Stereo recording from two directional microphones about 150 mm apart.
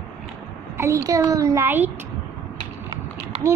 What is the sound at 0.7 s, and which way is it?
A child's voice, 20° right (ahead or behind).